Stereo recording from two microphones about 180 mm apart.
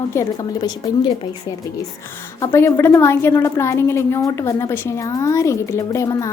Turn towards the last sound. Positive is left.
turn(degrees=15)  # may be behind; listen again after turning